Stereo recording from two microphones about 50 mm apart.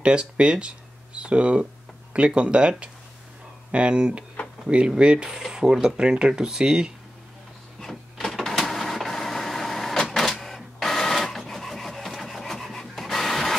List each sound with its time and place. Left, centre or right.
0.0 s speech: right
3.7 s speech: centre
7.8 s vehicle: centre